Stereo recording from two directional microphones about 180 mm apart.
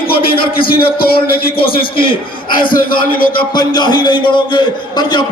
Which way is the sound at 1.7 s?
30° left (ahead or behind).